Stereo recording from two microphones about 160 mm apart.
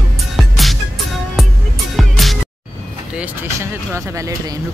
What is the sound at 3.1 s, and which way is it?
Speech, 10° right (ahead or behind).